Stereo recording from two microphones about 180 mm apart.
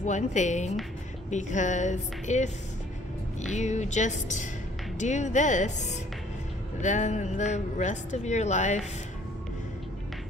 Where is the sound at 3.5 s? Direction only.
40° left (ahead or behind).